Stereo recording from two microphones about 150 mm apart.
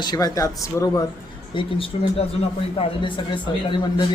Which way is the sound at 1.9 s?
40° left (ahead or behind).